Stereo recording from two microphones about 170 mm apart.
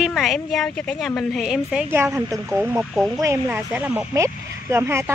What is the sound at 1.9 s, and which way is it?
Speech, 15° right (ahead or behind).